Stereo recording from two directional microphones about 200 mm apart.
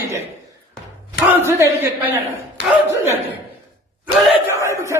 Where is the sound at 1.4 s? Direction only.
15° right (ahead or behind).